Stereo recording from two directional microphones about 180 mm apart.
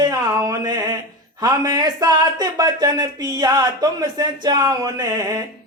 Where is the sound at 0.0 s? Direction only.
20° right (ahead or behind).